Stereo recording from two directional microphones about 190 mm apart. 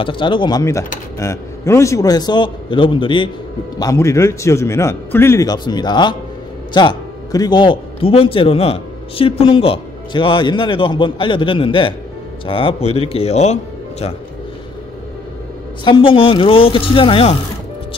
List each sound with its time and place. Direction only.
0.0 s a man's voice: 25° left (ahead or behind)
3.8 s a man's voice: 15° left (ahead or behind); by 14.1 s 35° left (ahead or behind)
15.8 s a man's voice: 25° left (ahead or behind)